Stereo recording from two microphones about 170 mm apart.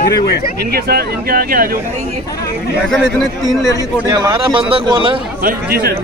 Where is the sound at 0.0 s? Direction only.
65° left (ahead or behind).